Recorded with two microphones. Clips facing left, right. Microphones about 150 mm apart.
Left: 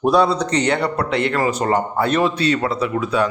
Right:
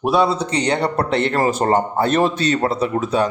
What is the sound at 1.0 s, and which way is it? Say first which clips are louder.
A man's voice: right 1 dB; 30° right (ahead or behind).